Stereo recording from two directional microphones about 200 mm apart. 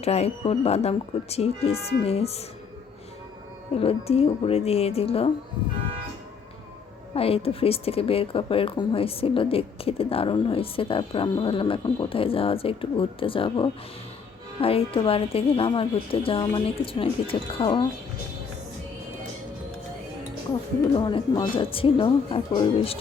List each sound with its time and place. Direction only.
0.0 s speech: 30° left (ahead or behind)
3.8 s a woman's voice: 30° left (ahead or behind)
7.1 s a woman's voice: 30° left (ahead or behind)
20.9 s a woman's voice: 25° left (ahead or behind)